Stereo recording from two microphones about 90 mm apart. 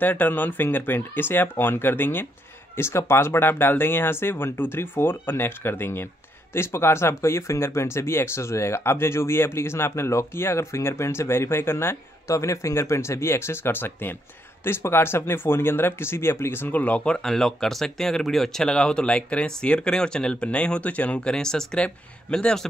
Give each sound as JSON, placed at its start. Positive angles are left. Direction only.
{"t": 0.0, "sound": "speech", "side_deg": 20}